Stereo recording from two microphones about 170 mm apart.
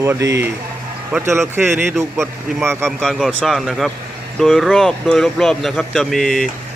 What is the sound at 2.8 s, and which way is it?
Speech, centre (ahead or behind).